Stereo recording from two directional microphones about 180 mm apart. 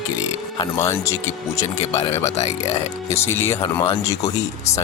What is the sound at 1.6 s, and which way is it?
Speech, 35° left (ahead or behind).